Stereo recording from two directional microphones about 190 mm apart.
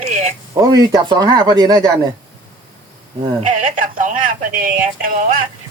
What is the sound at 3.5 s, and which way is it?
Speech, 45° right (ahead or behind).